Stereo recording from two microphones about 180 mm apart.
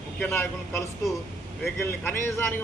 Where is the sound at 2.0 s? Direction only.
15° left (ahead or behind).